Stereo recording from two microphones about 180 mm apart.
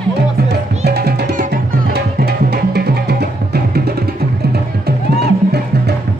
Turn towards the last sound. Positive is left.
turn(degrees=-65)  # may be behind; listen again after turning